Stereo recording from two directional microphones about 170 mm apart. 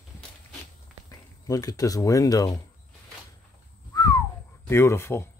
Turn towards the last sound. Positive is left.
turn(degrees=15)  # may be behind; listen again after turning